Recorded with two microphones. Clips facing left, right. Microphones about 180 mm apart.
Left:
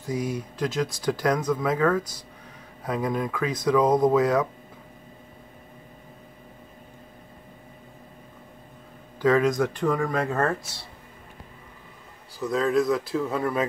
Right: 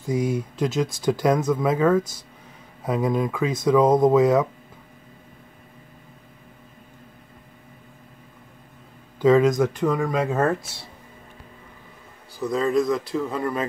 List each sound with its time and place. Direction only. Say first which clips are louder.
0.1 s speech: right 5 dB; 25° right (ahead or behind)
9.2 s speech: right 4 dB; 20° right (ahead or behind)
12.4 s a man's voice: right 1 dB; centre (ahead or behind)